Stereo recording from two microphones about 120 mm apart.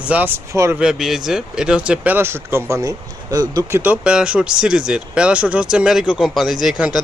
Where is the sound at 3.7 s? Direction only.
15° right (ahead or behind).